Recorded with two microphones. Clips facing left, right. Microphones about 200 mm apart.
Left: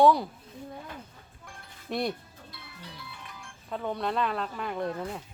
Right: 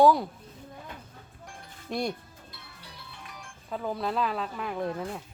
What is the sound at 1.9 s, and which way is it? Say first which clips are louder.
Speech: even; centre (ahead or behind).